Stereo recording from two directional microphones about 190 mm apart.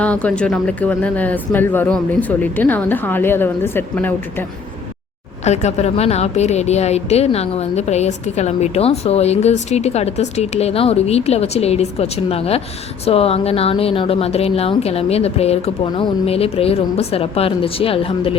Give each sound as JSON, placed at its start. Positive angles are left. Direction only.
{"t": 0.0, "sound": "speech", "side_deg": 5}
{"t": 5.5, "sound": "a woman's voice", "side_deg": 35}